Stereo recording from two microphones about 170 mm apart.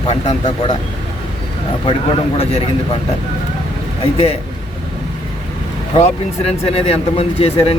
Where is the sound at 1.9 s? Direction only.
35° left (ahead or behind).